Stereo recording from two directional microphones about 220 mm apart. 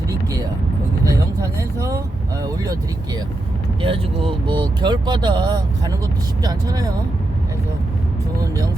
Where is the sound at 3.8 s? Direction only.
25° right (ahead or behind).